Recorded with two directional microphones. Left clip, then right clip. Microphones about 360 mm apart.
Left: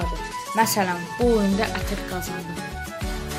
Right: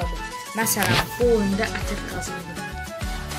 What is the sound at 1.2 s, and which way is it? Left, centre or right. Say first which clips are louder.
Speech: even; centre.